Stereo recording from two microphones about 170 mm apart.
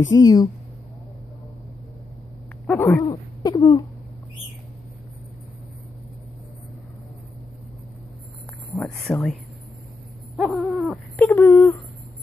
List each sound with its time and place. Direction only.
0.0 s speech: 20° left (ahead or behind)
2.8 s a sound: 20° left (ahead or behind)
8.7 s speech: 5° left (ahead or behind)
10.3 s owl: 5° right (ahead or behind)
11.1 s speech: 15° left (ahead or behind)